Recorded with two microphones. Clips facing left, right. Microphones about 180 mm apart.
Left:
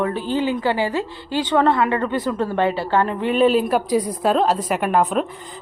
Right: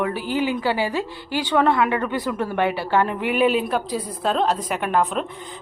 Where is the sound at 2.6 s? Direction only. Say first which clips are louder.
Left 2 dB; 20° left (ahead or behind).